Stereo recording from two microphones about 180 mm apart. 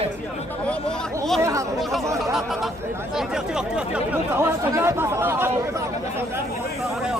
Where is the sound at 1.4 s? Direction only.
15° right (ahead or behind).